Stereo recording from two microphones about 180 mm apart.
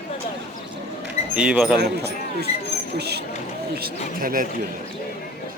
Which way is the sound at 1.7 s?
65° right (ahead or behind).